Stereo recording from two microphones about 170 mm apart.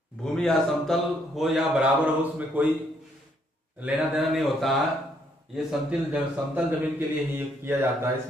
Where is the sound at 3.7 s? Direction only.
5° right (ahead or behind).